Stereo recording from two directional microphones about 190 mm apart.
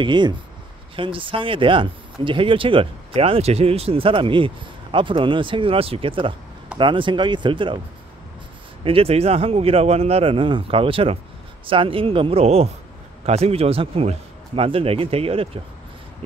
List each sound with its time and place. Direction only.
0.0 s speech: 25° right (ahead or behind)
8.8 s speech: 30° right (ahead or behind)